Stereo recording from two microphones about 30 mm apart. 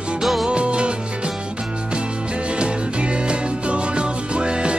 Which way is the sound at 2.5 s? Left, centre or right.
Right.